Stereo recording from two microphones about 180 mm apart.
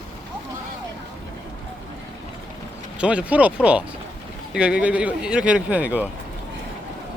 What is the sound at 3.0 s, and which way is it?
Speech, 5° right (ahead or behind).